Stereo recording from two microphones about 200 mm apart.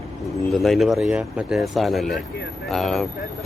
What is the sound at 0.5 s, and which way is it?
Speech, centre (ahead or behind).